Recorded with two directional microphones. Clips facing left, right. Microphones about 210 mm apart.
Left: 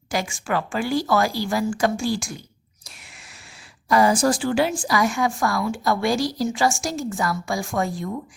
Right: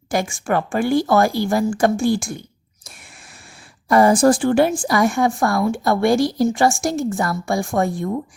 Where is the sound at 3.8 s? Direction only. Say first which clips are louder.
Right 5 dB; 55° right (ahead or behind).